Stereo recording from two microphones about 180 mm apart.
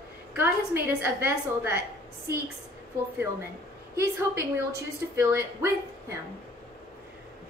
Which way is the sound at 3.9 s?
15° right (ahead or behind).